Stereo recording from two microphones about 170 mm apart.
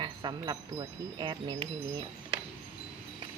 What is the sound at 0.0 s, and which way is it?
Wind chime, 25° right (ahead or behind).